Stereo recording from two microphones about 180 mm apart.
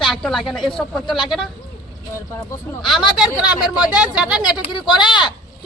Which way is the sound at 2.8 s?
Centre (ahead or behind).